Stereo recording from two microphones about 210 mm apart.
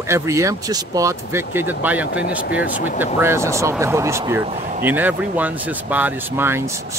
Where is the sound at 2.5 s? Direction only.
40° left (ahead or behind).